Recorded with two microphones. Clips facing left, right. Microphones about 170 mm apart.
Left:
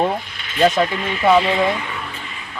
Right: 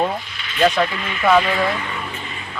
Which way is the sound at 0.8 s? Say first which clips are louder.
Left 2 dB; 25° left (ahead or behind).